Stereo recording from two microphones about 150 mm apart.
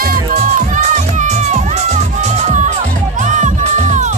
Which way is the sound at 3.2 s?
55° right (ahead or behind).